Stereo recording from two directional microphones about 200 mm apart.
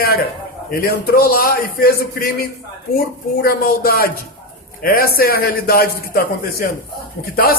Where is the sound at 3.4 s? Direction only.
50° left (ahead or behind).